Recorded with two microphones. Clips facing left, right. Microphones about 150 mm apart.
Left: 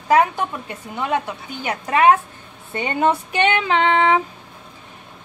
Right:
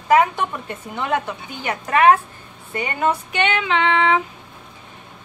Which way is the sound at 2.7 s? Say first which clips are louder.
Left 2 dB; 25° left (ahead or behind).